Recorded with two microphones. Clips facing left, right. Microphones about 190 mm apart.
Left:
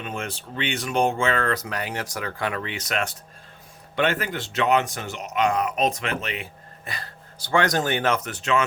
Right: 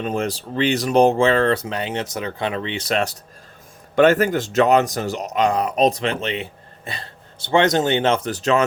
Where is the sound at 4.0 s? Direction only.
45° right (ahead or behind).